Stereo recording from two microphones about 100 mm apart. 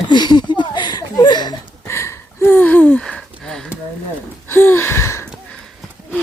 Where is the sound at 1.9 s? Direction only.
25° left (ahead or behind); by 3.6 s 5° left (ahead or behind).